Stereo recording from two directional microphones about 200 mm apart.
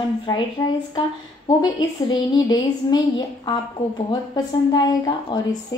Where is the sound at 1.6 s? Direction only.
20° left (ahead or behind).